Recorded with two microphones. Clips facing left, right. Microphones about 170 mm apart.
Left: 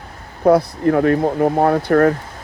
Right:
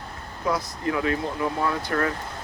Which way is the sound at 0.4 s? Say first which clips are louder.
Left 13 dB; 60° left (ahead or behind).